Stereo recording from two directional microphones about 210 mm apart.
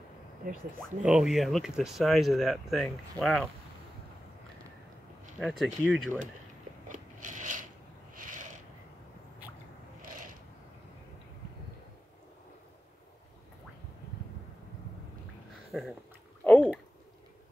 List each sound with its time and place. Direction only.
0.4 s speech: 40° right (ahead or behind)
1.0 s speech: centre (ahead or behind)
5.4 s speech: centre (ahead or behind)
6.9 s biting: 35° right (ahead or behind)
15.7 s a sound: centre (ahead or behind)